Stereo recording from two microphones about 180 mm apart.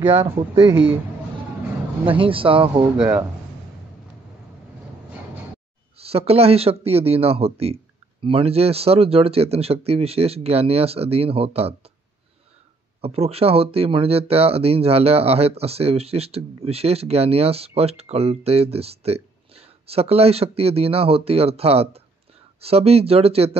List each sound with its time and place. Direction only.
0.0 s speech: 30° right (ahead or behind)
0.7 s speech: 85° right
2.0 s speech: 30° right (ahead or behind)
3.0 s speech: 10° right (ahead or behind)
5.9 s speech: 35° right (ahead or behind)
13.0 s speech: 35° right (ahead or behind)